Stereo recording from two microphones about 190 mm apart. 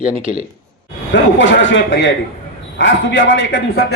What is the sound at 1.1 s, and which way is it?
A man's voice, 75° left (ahead or behind).